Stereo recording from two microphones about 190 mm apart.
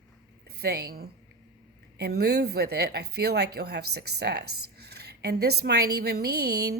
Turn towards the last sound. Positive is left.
turn(degrees=-55)  # may be behind; listen again after turning